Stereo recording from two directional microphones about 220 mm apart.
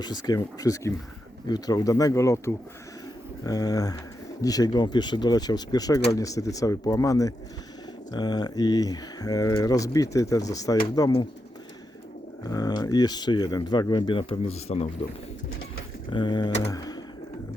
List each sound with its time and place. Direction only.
0.0 s speech: 20° left (ahead or behind)
12.5 s speech: 15° left (ahead or behind)
15.4 s a sound: 65° left (ahead or behind)
16.0 s speech: 20° left (ahead or behind)
16.6 s pigeon: 15° left (ahead or behind)